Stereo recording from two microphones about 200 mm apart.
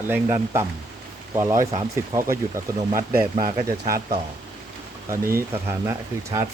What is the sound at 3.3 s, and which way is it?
Speech, 45° right (ahead or behind).